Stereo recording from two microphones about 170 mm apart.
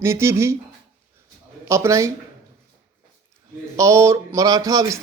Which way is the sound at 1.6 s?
15° right (ahead or behind).